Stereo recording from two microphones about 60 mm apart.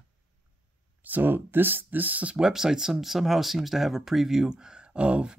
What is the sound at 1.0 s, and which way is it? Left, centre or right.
Speech, right.